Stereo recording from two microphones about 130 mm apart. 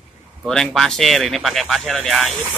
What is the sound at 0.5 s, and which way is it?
Speech, 5° left (ahead or behind).